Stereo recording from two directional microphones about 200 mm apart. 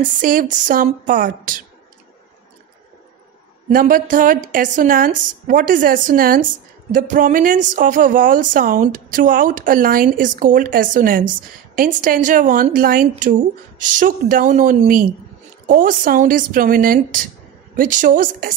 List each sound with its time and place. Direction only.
0.0 s a woman's voice: 45° right (ahead or behind)
3.7 s a woman's voice: 45° right (ahead or behind)